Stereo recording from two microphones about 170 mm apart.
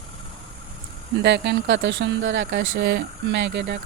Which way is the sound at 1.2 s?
80° right.